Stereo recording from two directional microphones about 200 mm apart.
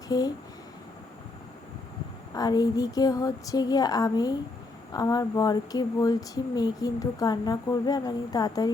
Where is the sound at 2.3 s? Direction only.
20° left (ahead or behind).